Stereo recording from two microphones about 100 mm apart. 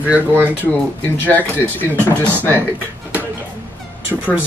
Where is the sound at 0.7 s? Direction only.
15° left (ahead or behind).